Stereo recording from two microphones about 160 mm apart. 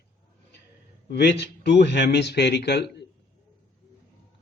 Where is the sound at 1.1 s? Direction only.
90° left.